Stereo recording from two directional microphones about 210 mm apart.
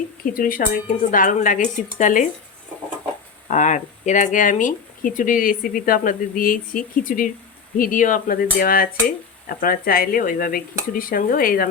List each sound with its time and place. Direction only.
0.3 s speech: 40° left (ahead or behind)
3.5 s speech: 35° left (ahead or behind)